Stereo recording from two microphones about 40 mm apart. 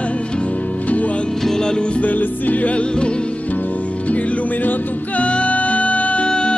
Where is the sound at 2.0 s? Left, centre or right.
Left.